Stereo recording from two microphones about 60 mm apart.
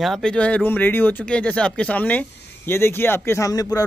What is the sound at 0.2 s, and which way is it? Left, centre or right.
Speech, centre.